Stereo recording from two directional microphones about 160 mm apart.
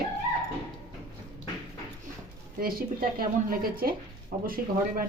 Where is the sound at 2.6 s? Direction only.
65° right (ahead or behind).